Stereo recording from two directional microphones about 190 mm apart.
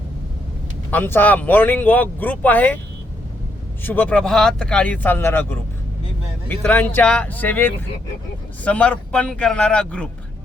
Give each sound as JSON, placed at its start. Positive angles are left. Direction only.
{"t": 0.9, "sound": "speech", "side_deg": 10}
{"t": 3.8, "sound": "speech", "side_deg": 10}